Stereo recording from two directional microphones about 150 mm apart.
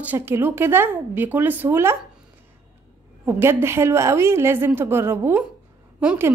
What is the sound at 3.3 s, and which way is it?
Speech, 15° right (ahead or behind).